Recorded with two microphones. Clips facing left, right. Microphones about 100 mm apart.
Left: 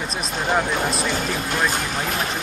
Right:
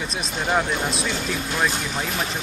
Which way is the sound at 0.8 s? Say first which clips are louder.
Left 3 dB; 40° left (ahead or behind).